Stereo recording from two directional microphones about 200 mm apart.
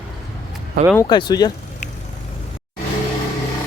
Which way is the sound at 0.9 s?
20° left (ahead or behind).